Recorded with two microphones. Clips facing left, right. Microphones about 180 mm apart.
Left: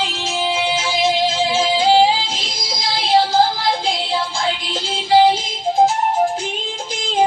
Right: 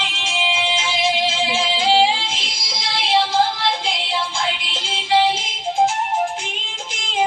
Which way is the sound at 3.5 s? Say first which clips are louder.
Left 3 dB; 35° left (ahead or behind).